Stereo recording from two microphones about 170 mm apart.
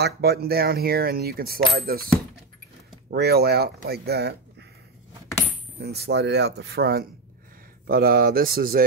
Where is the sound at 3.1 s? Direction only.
70° right (ahead or behind).